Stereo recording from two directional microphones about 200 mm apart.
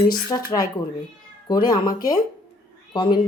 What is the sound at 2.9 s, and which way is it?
Speech, 25° left (ahead or behind).